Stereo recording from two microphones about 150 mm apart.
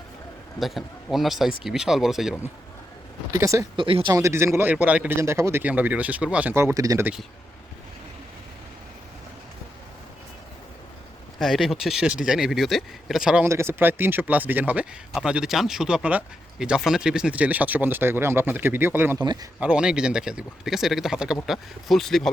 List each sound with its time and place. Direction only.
0.6 s speech: centre (ahead or behind)
3.3 s speech: 20° right (ahead or behind)
3.8 s speech: 35° right (ahead or behind)
4.1 s speech: 20° right (ahead or behind)
11.3 s speech: centre (ahead or behind)
19.2 s speech: 30° right (ahead or behind)
19.5 s speech: 5° right (ahead or behind)